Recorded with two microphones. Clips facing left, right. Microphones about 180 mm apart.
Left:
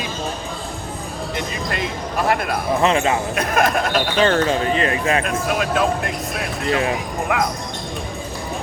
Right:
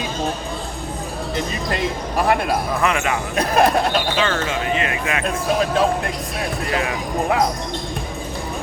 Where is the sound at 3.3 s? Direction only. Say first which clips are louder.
Right 2 dB; 35° right (ahead or behind).